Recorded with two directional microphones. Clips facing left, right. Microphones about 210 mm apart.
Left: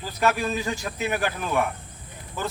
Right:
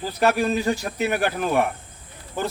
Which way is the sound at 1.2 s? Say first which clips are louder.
Right 4 dB; 50° right (ahead or behind).